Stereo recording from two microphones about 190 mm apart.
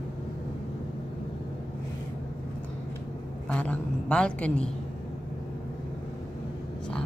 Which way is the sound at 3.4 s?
5° left (ahead or behind).